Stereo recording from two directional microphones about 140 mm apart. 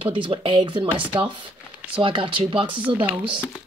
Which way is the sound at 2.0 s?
40° right (ahead or behind).